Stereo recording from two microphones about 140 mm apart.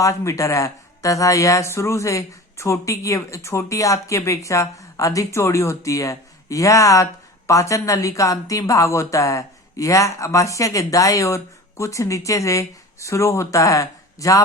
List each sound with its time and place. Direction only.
0.0 s speech: 20° left (ahead or behind)